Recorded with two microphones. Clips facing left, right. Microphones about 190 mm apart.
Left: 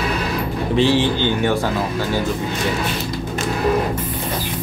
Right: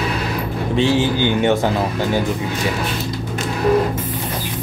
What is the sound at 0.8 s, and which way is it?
Speech, centre (ahead or behind).